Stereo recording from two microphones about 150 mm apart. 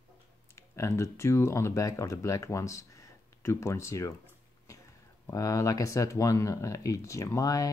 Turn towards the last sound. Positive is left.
turn(degrees=25)  # may be behind; listen again after turning